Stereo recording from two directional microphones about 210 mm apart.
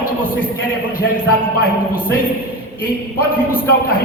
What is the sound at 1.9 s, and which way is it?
Speech, 40° left (ahead or behind).